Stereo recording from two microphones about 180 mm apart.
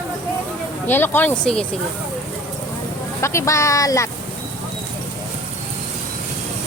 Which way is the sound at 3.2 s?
15° left (ahead or behind).